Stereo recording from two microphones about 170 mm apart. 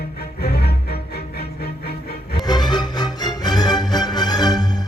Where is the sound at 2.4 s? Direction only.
25° left (ahead or behind).